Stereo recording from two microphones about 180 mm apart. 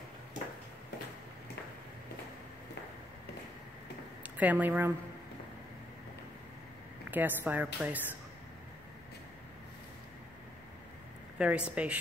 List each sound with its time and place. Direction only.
4.2 s speech: 10° right (ahead or behind)
7.1 s a woman's voice: 10° right (ahead or behind)
11.3 s a woman's voice: 5° right (ahead or behind)